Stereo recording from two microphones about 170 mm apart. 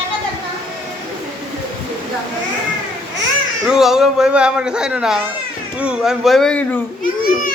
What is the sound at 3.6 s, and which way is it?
Speech, 5° right (ahead or behind).